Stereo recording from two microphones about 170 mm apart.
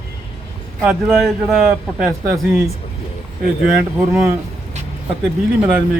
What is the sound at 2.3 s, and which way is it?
Speech, 15° right (ahead or behind).